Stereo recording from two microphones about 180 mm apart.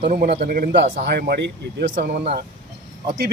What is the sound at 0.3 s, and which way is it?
Speech, 65° right (ahead or behind).